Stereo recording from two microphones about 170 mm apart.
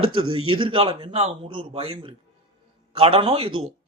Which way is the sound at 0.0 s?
30° right (ahead or behind).